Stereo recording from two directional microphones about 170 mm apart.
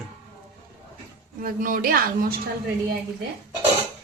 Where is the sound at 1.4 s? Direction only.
55° right (ahead or behind).